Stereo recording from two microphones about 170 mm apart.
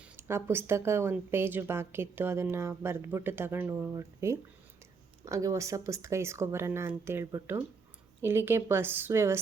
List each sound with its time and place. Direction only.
0.0 s speech: 15° right (ahead or behind)